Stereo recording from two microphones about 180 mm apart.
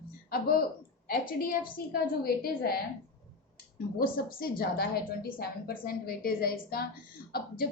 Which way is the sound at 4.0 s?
55° left (ahead or behind).